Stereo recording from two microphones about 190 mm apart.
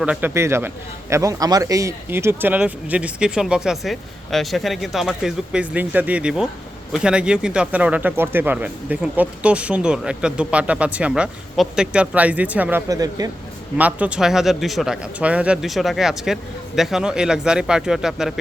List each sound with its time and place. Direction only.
0.0 s speech: 10° right (ahead or behind)
12.9 s speech: 20° right (ahead or behind)
13.7 s speech: 10° right (ahead or behind)